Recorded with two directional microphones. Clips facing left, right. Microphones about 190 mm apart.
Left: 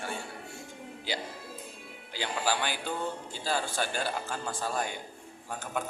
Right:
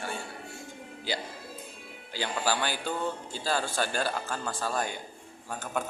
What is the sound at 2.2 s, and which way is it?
Speech, 15° left (ahead or behind).